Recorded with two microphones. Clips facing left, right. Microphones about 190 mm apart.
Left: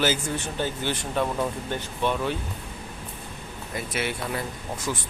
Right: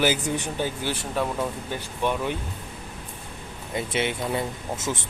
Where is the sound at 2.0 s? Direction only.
15° right (ahead or behind).